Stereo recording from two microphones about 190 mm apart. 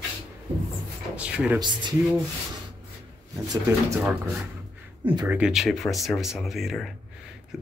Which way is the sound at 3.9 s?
5° right (ahead or behind).